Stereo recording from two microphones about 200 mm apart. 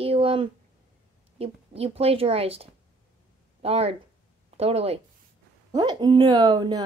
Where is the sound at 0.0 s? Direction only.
30° right (ahead or behind).